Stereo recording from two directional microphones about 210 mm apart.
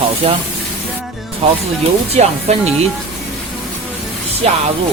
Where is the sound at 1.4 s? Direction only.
30° right (ahead or behind).